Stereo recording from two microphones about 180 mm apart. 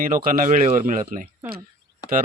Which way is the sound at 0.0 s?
50° right (ahead or behind).